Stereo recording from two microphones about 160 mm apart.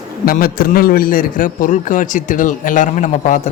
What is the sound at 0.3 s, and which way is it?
A man's voice, 70° left (ahead or behind).